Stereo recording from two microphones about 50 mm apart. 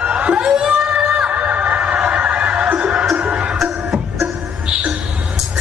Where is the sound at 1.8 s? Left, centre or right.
Centre.